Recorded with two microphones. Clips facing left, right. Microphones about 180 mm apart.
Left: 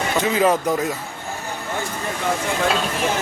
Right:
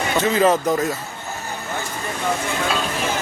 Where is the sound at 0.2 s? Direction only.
15° left (ahead or behind).